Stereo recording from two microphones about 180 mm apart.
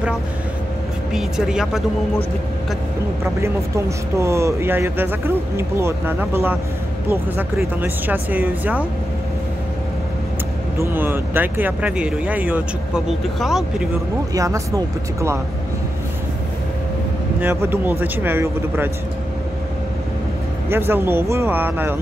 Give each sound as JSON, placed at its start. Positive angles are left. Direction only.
{"t": 1.1, "sound": "speech", "side_deg": -5}
{"t": 3.3, "sound": "speech", "side_deg": -15}
{"t": 10.8, "sound": "speech", "side_deg": -10}
{"t": 14.3, "sound": "speech", "side_deg": -20}
{"t": 17.4, "sound": "speech", "side_deg": -10}
{"t": 20.7, "sound": "speech", "side_deg": -10}